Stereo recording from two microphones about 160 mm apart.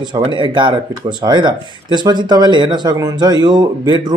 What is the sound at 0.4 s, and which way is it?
Speech, 30° right (ahead or behind).